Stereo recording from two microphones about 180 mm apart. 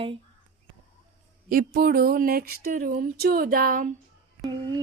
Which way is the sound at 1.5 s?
55° right (ahead or behind).